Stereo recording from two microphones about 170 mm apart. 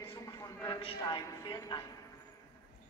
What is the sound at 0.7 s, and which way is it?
A man's voice, 30° left (ahead or behind).